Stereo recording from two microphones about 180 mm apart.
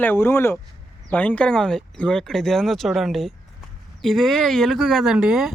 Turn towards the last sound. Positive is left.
turn(degrees=-5)  # may be behind; listen again after turning